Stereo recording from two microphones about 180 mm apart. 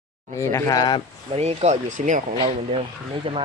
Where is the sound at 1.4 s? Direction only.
40° right (ahead or behind).